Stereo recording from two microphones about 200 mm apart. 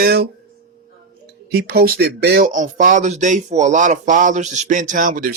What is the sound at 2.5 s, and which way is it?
Speech, 40° right (ahead or behind).